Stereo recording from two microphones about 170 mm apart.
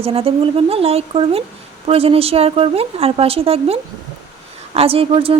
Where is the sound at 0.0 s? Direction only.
35° right (ahead or behind).